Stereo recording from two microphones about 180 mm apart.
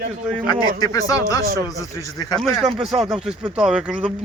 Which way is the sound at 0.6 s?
20° left (ahead or behind).